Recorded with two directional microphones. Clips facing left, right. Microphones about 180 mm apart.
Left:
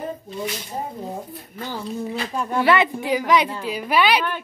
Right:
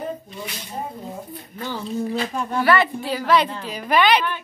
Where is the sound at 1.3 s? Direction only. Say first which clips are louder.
Right 1 dB; centre (ahead or behind).